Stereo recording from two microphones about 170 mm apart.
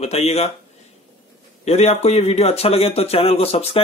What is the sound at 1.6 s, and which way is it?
A man's voice, 40° left (ahead or behind).